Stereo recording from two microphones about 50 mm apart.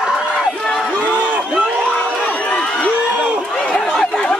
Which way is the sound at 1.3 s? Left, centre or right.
Right.